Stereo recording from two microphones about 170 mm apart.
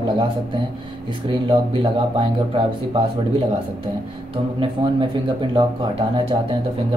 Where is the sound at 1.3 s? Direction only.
30° right (ahead or behind).